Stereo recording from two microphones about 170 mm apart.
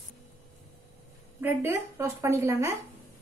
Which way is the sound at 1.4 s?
15° right (ahead or behind).